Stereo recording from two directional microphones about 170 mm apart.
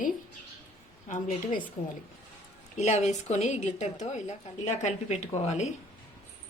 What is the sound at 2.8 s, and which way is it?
A woman's voice, 40° left (ahead or behind).